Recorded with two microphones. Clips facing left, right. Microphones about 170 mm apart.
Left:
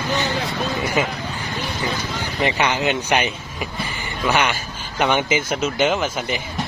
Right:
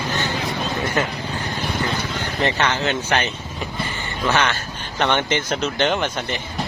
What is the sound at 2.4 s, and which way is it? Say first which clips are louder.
Speech: left 1 dB; 10° left (ahead or behind).